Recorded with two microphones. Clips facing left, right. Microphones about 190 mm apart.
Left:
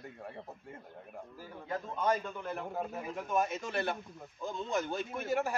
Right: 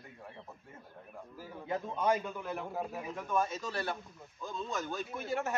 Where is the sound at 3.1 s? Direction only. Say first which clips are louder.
Left 1 dB; 20° left (ahead or behind).